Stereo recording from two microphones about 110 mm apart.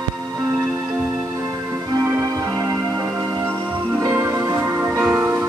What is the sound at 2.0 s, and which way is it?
Music, 25° right (ahead or behind).